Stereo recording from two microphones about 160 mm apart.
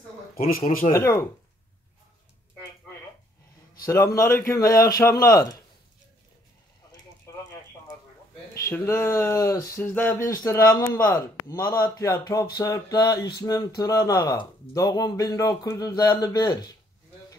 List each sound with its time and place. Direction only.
0.9 s speech: 20° left (ahead or behind)
3.8 s a man's voice: 20° left (ahead or behind)
8.6 s speech: 15° left (ahead or behind)